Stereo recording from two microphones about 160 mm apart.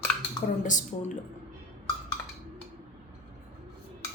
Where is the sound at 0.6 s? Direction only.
50° left (ahead or behind).